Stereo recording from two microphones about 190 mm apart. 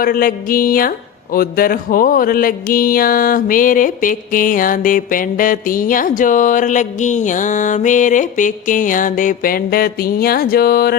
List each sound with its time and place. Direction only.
0.0 s speech: 50° left (ahead or behind)